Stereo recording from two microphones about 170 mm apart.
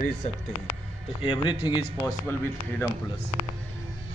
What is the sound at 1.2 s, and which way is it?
Speech, 30° left (ahead or behind).